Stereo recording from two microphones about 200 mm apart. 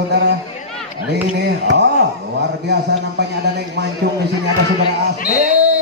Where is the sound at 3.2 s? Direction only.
60° right (ahead or behind).